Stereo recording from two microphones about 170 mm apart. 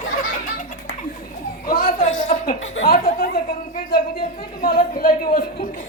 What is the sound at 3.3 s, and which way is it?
Speech, 65° left (ahead or behind).